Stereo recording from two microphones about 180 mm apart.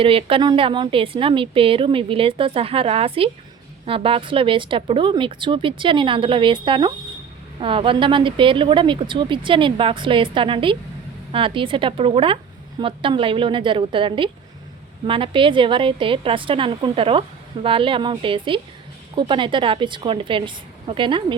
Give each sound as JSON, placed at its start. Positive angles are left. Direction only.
{"t": 0.0, "sound": "a woman's voice", "side_deg": -30}